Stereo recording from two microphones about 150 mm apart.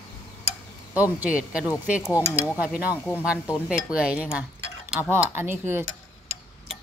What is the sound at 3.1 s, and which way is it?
Speech, 15° left (ahead or behind).